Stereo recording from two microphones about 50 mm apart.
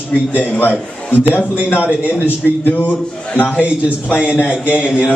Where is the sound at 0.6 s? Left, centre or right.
Left.